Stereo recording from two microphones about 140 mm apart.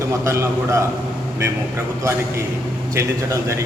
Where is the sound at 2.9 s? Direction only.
20° right (ahead or behind).